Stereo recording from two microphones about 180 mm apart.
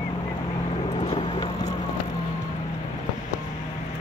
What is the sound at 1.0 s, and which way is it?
Vehicle, 30° left (ahead or behind).